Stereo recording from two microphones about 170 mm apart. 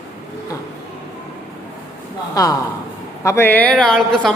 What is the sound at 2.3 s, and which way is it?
Speech, 20° left (ahead or behind).